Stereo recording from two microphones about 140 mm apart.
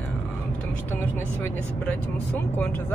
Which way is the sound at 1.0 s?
15° left (ahead or behind).